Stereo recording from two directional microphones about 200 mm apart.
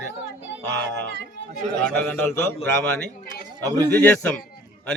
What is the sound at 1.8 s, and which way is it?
Speech, 5° left (ahead or behind).